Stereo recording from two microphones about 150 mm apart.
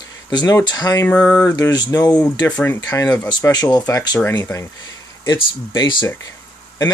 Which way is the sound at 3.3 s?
30° left (ahead or behind).